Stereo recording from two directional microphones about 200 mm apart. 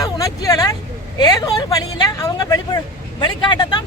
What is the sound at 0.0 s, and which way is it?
Vehicle, 15° left (ahead or behind).